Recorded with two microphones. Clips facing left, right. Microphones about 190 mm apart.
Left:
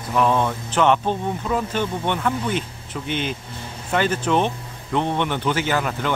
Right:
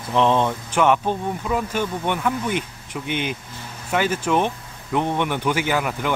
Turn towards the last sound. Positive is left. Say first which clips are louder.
# even
turn(degrees=-10)  # may be behind; listen again after turning